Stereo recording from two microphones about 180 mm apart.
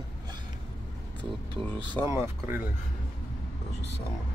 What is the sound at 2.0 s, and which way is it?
Speech, 15° left (ahead or behind).